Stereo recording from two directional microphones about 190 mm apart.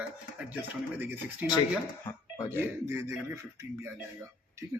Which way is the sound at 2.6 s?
15° right (ahead or behind).